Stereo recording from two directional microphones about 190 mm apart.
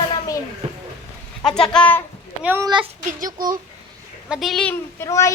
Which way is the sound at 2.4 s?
10° right (ahead or behind).